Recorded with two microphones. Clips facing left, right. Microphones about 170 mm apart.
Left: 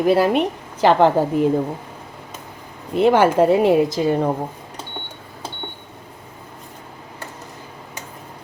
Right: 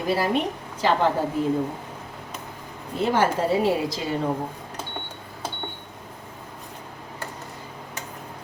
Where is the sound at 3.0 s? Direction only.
70° left (ahead or behind); by 4.3 s 50° left (ahead or behind).